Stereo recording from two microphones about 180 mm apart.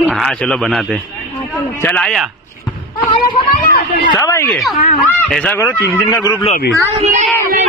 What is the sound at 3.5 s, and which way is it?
Speech, 50° left (ahead or behind).